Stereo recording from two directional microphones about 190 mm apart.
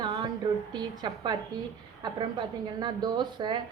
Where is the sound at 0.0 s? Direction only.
25° right (ahead or behind).